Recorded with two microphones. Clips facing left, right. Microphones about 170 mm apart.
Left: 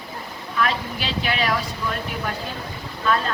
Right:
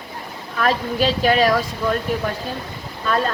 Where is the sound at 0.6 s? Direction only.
40° right (ahead or behind).